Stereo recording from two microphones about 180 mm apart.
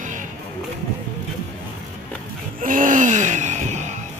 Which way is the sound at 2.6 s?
45° right (ahead or behind).